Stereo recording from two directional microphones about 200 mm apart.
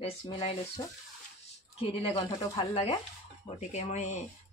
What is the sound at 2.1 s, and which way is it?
Speech, 25° left (ahead or behind).